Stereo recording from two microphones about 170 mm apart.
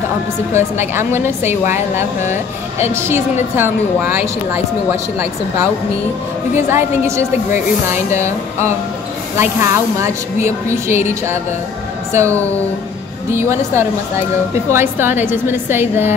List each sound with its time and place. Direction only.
0.5 s a woman's voice: 15° right (ahead or behind)
2.9 s a woman's voice: 15° right (ahead or behind)
6.5 s a woman's voice: 15° right (ahead or behind)
12.1 s a woman's voice: 15° right (ahead or behind)